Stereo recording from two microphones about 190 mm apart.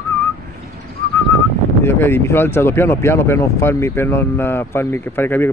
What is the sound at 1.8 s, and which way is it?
Speech, 15° left (ahead or behind).